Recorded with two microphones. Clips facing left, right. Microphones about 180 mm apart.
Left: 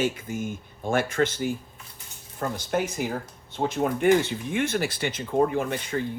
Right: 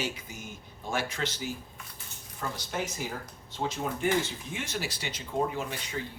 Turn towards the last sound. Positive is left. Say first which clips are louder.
# left 8 dB
turn(degrees=55)  # may be behind; listen again after turning